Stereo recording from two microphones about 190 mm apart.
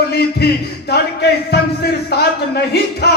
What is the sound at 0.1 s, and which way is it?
Speech, 55° left (ahead or behind).